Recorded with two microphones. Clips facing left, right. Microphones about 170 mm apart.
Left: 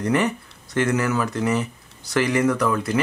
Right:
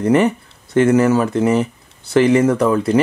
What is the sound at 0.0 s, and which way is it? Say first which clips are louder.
Speech: right 7 dB; 30° right (ahead or behind).